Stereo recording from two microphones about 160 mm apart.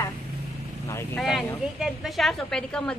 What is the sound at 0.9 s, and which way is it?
Speech, 15° left (ahead or behind).